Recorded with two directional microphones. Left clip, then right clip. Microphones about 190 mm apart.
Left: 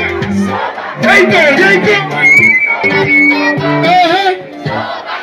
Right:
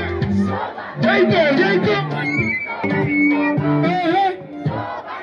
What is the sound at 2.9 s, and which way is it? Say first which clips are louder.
Music: left 8 dB; 25° left (ahead or behind).